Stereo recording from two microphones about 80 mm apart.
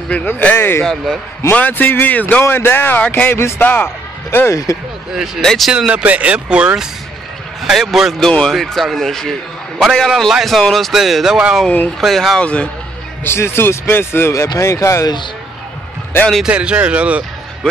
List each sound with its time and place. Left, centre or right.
0.1 s speech: left
5.4 s speech: centre
5.7 s speech: centre
7.6 s speech: centre
8.3 s speech: centre
8.5 s speech: centre
12.4 s speech: centre
13.2 s speech: left
16.4 s speech: centre